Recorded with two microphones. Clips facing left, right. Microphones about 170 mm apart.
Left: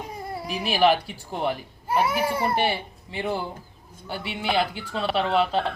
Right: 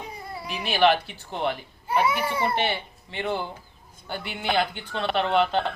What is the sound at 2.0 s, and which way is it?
Speech, 45° left (ahead or behind).